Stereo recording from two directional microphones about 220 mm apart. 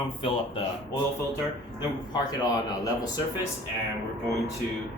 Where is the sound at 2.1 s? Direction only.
20° left (ahead or behind).